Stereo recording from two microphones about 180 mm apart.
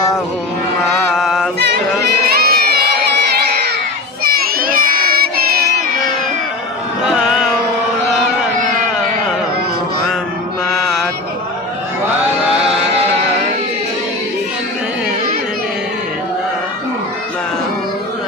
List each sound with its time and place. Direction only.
1.1 s chant: centre (ahead or behind)
2.4 s crowd: 60° right (ahead or behind)
4.2 s child singing: 55° right (ahead or behind)
7.0 s carnatic music: 5° right (ahead or behind)
10.7 s mantra: centre (ahead or behind)